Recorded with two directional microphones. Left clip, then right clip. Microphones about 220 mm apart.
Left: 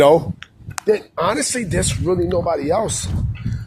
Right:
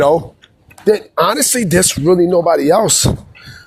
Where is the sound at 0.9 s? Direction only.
45° right (ahead or behind).